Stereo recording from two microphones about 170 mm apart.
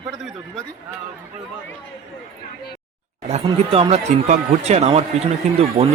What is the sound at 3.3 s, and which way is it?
Speech, 35° right (ahead or behind).